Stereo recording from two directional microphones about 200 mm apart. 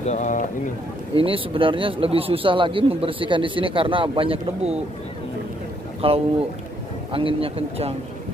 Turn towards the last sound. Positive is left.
turn(degrees=-30)  # may be behind; listen again after turning